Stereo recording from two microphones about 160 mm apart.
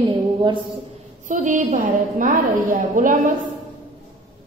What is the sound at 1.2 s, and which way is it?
A woman's voice, 55° right (ahead or behind).